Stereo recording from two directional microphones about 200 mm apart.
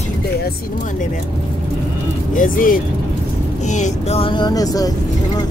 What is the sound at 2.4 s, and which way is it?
Speech, 45° left (ahead or behind).